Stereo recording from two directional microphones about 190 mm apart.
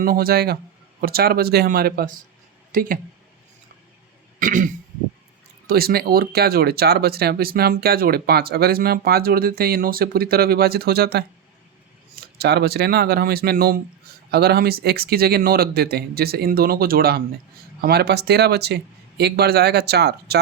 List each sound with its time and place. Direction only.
0.0 s speech: 50° right (ahead or behind)
4.4 s throat clearing: 45° right (ahead or behind)
5.6 s speech: 55° right (ahead or behind)